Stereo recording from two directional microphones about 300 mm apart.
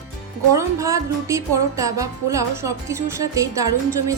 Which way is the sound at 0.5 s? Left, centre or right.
Centre.